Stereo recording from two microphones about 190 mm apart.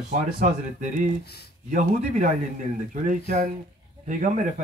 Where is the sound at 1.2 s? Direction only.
55° left (ahead or behind).